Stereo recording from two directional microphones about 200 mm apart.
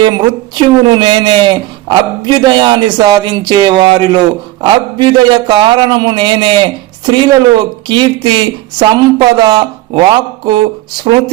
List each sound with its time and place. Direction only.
0.0 s speech: 20° right (ahead or behind)